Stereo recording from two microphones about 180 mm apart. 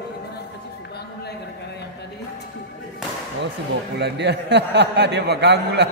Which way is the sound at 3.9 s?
70° right (ahead or behind).